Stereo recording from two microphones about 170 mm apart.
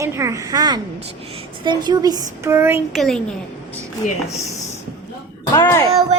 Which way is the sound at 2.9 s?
Centre (ahead or behind).